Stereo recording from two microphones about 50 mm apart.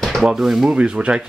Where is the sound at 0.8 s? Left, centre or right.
Right.